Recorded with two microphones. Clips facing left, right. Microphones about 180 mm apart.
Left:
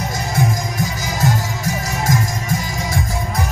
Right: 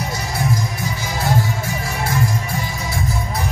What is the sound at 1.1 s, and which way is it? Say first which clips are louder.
Music: right 1 dB; 40° left (ahead or behind).